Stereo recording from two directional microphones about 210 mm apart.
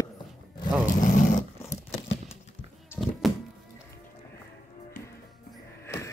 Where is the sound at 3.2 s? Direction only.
Centre (ahead or behind).